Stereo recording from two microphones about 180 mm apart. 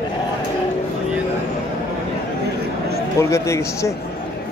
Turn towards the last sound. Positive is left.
turn(degrees=15)  # may be behind; listen again after turning